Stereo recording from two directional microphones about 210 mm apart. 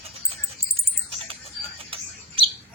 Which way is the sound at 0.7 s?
25° right (ahead or behind).